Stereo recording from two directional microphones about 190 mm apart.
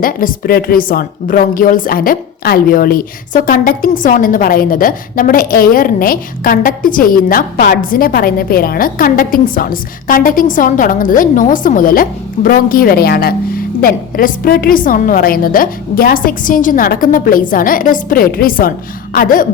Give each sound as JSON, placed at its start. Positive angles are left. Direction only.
{"t": 0.0, "sound": "a woman's voice", "side_deg": 50}